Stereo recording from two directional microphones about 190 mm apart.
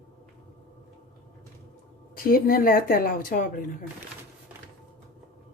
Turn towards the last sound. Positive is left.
turn(degrees=45)  # may be behind; listen again after turning